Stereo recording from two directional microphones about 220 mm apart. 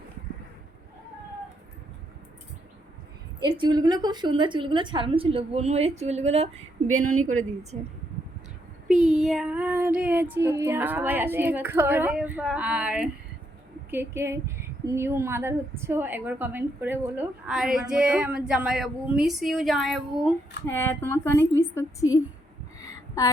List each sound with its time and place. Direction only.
3.4 s a woman's voice: 20° right (ahead or behind)
8.9 s speech: centre (ahead or behind)
20.7 s speech: 10° left (ahead or behind)
22.8 s a sound: 15° left (ahead or behind)